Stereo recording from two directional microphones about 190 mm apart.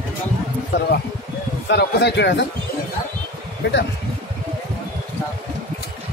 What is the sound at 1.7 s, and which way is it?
Speech, 60° left (ahead or behind).